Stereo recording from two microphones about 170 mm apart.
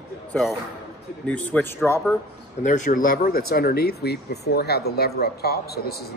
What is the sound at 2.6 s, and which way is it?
Speech, 45° left (ahead or behind).